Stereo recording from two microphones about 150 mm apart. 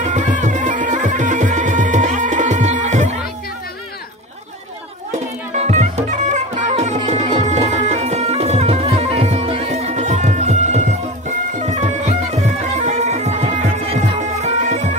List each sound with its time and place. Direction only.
0.0 s music: 55° right (ahead or behind)
5.5 s music: 50° right (ahead or behind)